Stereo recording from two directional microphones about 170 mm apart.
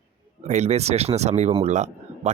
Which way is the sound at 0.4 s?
40° right (ahead or behind).